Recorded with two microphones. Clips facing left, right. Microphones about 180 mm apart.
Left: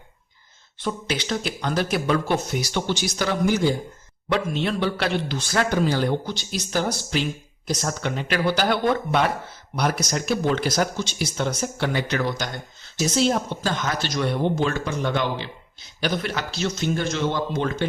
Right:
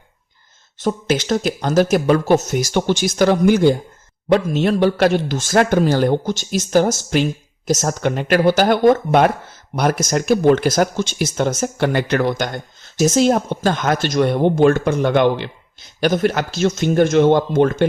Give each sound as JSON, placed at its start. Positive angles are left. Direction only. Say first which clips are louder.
{"t": 0.8, "sound": "speech", "louder": "right 8 dB", "side_deg": -45}
{"t": 4.3, "sound": "speech", "louder": "right 8 dB", "side_deg": -45}
{"t": 16.0, "sound": "speech", "louder": "right 9 dB", "side_deg": -50}